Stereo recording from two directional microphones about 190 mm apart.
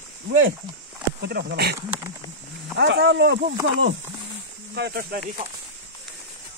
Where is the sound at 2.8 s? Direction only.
65° right (ahead or behind).